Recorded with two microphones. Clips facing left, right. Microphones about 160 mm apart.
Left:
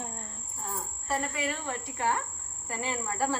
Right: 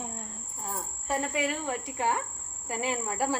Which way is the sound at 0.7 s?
15° right (ahead or behind).